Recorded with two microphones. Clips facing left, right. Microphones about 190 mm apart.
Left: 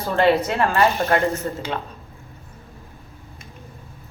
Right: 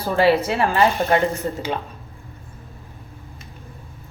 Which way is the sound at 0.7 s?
20° right (ahead or behind).